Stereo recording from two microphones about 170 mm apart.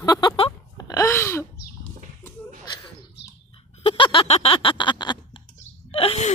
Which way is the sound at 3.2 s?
90° left.